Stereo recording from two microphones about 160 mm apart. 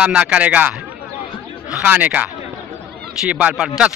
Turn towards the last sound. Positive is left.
turn(degrees=-5)  # may be behind; listen again after turning